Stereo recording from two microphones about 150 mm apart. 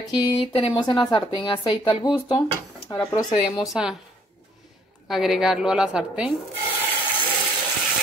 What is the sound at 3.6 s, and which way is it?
Speech, 5° right (ahead or behind).